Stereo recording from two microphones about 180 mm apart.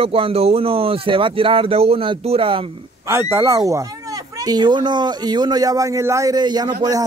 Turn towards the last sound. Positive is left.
turn(degrees=-25)  # may be behind; listen again after turning